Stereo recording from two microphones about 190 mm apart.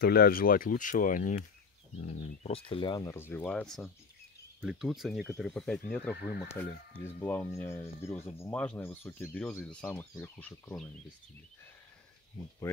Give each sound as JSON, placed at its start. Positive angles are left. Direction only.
{"t": 0.0, "sound": "speech", "side_deg": 55}